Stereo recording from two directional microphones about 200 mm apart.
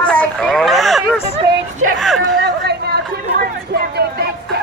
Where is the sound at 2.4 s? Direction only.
55° right (ahead or behind).